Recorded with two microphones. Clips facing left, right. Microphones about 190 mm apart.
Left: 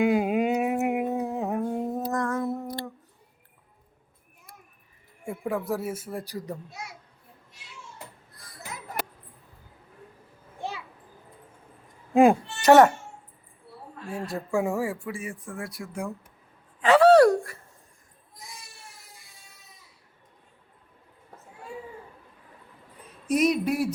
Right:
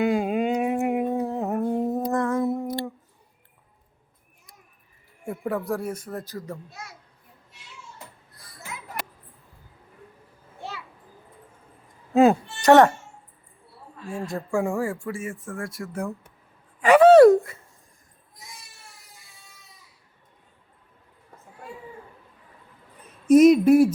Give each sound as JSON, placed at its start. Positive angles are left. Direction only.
{"t": 0.0, "sound": "humming", "side_deg": 10}
{"t": 2.4, "sound": "humming", "side_deg": -20}
{"t": 5.2, "sound": "a child's voice", "side_deg": 0}
{"t": 12.1, "sound": "speech", "side_deg": 15}
{"t": 12.6, "sound": "a woman's voice", "side_deg": 0}
{"t": 14.0, "sound": "a child's voice", "side_deg": 5}
{"t": 16.8, "sound": "speech", "side_deg": -20}
{"t": 23.2, "sound": "a sound", "side_deg": -45}